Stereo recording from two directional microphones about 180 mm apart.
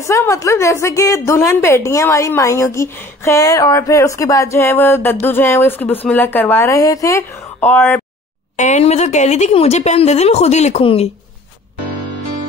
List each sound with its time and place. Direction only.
0.0 s a woman's voice: 15° left (ahead or behind)
8.5 s speech: 40° left (ahead or behind)